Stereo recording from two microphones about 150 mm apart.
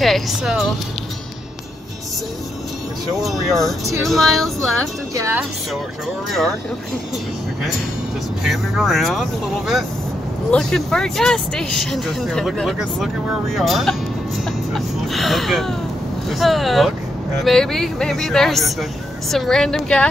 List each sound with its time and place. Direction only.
0.0 s speech: centre (ahead or behind)
3.2 s speech: centre (ahead or behind)
5.1 s speech: 20° right (ahead or behind)
8.5 s speech: centre (ahead or behind)